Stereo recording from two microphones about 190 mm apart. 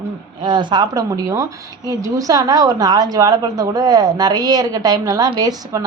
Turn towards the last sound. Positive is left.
turn(degrees=-20)  # may be behind; listen again after turning